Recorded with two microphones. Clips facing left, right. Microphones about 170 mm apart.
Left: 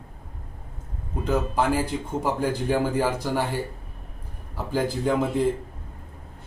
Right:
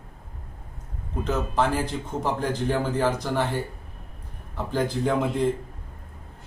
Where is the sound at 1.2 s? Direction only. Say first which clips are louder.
Left 1 dB; 10° left (ahead or behind).